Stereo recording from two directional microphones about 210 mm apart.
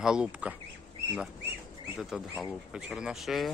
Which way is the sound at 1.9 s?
Centre (ahead or behind).